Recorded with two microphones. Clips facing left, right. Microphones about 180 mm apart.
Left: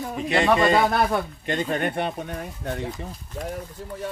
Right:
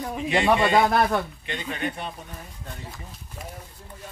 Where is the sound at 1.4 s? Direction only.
45° left (ahead or behind); by 3.1 s 75° left (ahead or behind).